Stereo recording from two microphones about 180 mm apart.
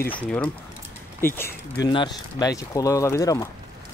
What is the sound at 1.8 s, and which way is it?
Speech, 25° left (ahead or behind).